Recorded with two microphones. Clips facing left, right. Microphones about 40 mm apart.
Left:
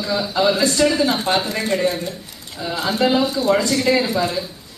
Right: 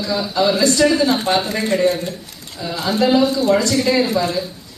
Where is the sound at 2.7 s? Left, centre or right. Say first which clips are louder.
Right 2 dB; left.